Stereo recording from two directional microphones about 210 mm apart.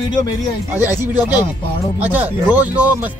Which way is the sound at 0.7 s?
10° right (ahead or behind).